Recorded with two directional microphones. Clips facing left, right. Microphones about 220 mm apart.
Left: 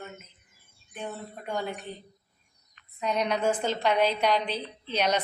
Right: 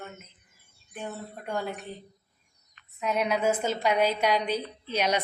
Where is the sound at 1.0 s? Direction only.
5° right (ahead or behind).